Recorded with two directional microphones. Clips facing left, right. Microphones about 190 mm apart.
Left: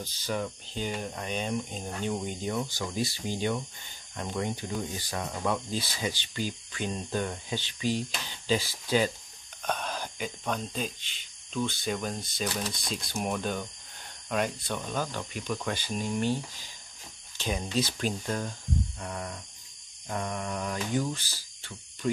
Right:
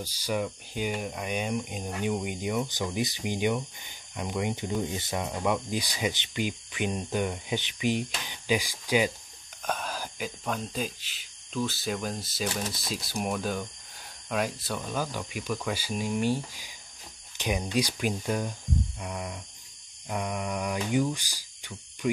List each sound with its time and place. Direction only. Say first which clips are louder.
0.0 s speech: right 2 dB; 10° right (ahead or behind)